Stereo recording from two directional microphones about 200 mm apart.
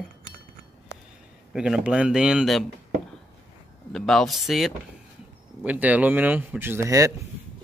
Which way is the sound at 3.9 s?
Centre (ahead or behind).